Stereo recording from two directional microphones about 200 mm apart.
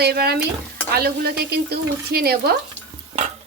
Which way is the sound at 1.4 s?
50° right (ahead or behind).